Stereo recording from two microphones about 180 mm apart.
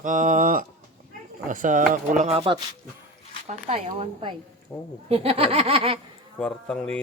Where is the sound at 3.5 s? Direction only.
35° right (ahead or behind).